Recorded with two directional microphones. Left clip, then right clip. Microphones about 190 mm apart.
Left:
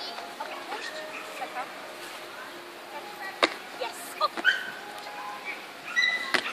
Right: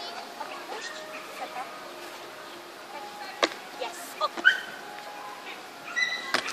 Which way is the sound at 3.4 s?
5° right (ahead or behind).